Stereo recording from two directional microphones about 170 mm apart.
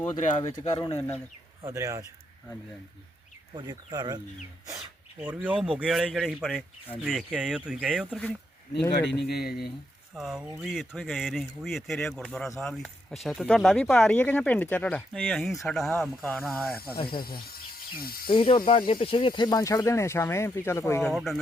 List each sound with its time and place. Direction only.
0.2 s speech: 45° left (ahead or behind)
0.9 s speech: 10° left (ahead or behind)
1.6 s speech: 20° right (ahead or behind)
3.5 s speech: 25° right (ahead or behind)
5.2 s speech: 10° right (ahead or behind)
9.0 s speech: 75° left (ahead or behind)
10.2 s speech: centre (ahead or behind)
17.0 s speech: 30° left (ahead or behind)
17.9 s speech: 60° left (ahead or behind)
18.3 s speech: 30° left (ahead or behind)
21.1 s speech: centre (ahead or behind)